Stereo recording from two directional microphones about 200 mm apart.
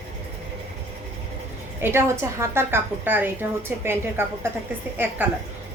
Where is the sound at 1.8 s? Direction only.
10° right (ahead or behind).